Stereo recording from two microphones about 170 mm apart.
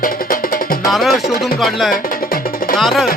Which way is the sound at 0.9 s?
Centre (ahead or behind).